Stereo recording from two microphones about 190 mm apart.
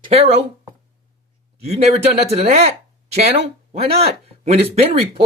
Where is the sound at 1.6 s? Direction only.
35° right (ahead or behind).